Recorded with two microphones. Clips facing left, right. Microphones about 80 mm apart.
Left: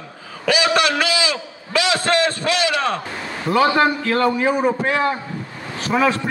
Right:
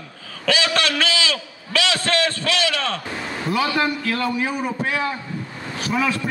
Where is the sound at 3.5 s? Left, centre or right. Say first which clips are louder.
Left 6 dB; left.